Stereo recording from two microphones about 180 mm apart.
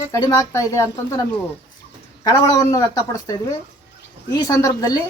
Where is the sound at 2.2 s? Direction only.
20° left (ahead or behind).